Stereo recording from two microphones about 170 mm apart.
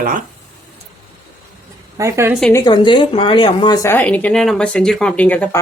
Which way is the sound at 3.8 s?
10° left (ahead or behind).